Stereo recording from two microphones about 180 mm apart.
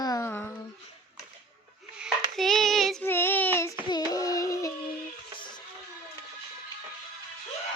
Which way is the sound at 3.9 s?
20° left (ahead or behind).